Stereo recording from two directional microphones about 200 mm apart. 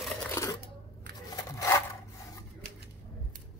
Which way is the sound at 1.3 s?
20° left (ahead or behind).